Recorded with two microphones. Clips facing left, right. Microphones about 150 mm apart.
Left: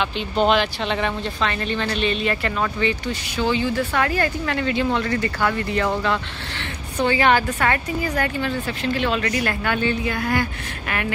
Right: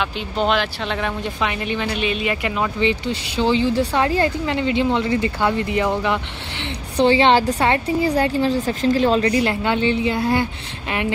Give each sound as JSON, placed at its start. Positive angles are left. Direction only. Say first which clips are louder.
{"t": 0.0, "sound": "speech", "louder": "left 1 dB", "side_deg": 0}
{"t": 1.4, "sound": "speech", "louder": "right 1 dB", "side_deg": -10}
{"t": 7.0, "sound": "speech", "louder": "right 4 dB", "side_deg": -30}